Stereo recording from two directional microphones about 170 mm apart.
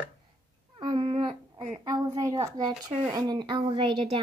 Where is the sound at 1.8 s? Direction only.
25° right (ahead or behind).